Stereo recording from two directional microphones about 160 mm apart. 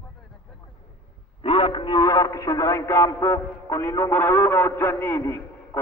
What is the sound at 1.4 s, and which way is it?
A man's voice, 35° left (ahead or behind).